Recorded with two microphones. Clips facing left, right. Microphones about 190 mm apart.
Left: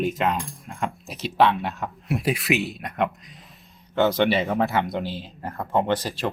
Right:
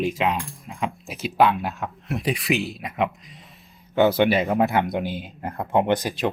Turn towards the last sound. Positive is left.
turn(degrees=-15)  # may be behind; listen again after turning